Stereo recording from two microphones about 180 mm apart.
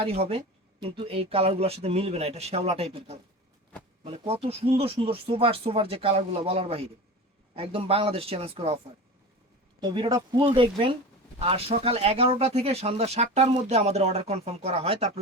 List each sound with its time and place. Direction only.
0.3 s speech: 30° right (ahead or behind)
9.8 s speech: 25° right (ahead or behind)